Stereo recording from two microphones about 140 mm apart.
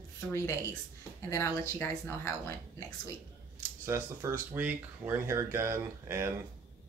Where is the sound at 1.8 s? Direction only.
15° left (ahead or behind).